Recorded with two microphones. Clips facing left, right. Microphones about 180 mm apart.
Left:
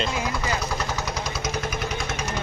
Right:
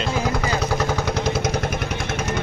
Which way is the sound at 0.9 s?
55° right (ahead or behind).